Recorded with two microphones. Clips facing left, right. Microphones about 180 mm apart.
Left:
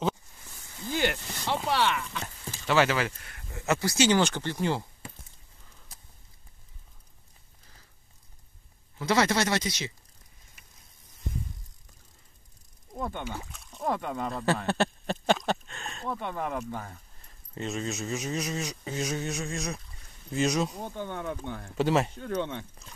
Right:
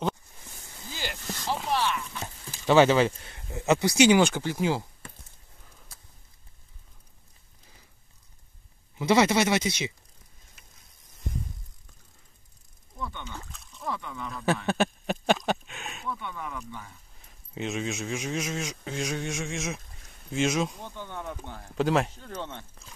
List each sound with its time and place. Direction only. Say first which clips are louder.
0.9 s a sound: left 7 dB; 70° left (ahead or behind)
2.6 s speech: right 6 dB; 25° right (ahead or behind); by 4.8 s 5° right (ahead or behind)
8.9 s speech: right 3 dB; 15° right (ahead or behind)
12.9 s a sound: left 4 dB; 50° left (ahead or behind)
13.4 s speech: left 2 dB; 5° left (ahead or behind)
13.7 s speech: left 5 dB; 50° left (ahead or behind)
15.2 s speech: right 1 dB; centre (ahead or behind)
16.1 s speech: left 4 dB; 45° left (ahead or behind)
17.2 s speech: right 2 dB; centre (ahead or behind)
20.8 s speech: left 3 dB; 50° left (ahead or behind)
21.7 s speech: right 1 dB; centre (ahead or behind)
22.1 s speech: left 6 dB; 60° left (ahead or behind)